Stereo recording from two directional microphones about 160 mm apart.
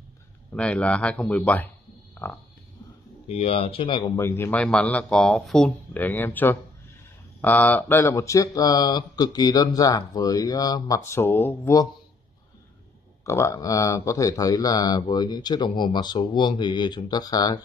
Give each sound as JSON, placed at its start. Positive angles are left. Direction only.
{"t": 0.5, "sound": "speech", "side_deg": 5}
{"t": 3.3, "sound": "speech", "side_deg": 40}
{"t": 4.2, "sound": "speech", "side_deg": 15}
{"t": 13.2, "sound": "speech", "side_deg": 20}